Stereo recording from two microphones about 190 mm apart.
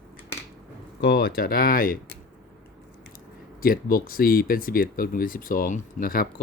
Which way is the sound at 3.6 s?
50° left (ahead or behind).